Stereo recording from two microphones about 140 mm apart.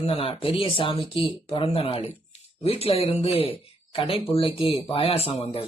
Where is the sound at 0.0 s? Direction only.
45° left (ahead or behind).